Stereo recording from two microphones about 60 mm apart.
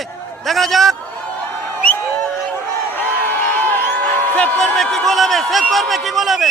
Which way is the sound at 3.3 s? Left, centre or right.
Left.